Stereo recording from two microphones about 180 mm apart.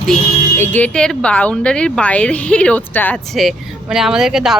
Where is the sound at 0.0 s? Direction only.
Centre (ahead or behind).